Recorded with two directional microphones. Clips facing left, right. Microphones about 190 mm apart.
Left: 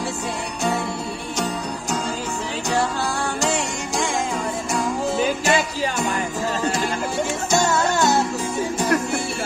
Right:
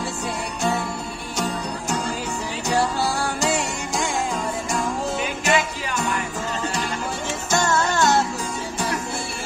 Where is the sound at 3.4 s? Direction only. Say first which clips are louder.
Even; centre (ahead or behind).